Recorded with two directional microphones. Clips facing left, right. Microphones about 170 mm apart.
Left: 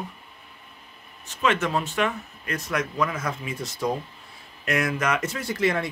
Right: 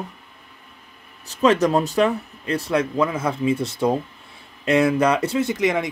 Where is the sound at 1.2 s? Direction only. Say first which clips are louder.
Right 7 dB; 35° right (ahead or behind).